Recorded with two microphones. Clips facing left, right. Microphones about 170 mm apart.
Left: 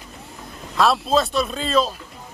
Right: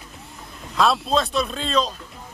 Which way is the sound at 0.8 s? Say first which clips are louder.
Left 2 dB; centre (ahead or behind).